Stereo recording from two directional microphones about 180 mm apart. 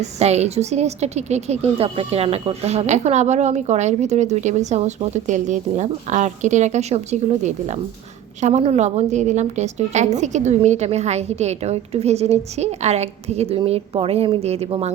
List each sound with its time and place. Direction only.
0.0 s a woman's voice: 35° right (ahead or behind)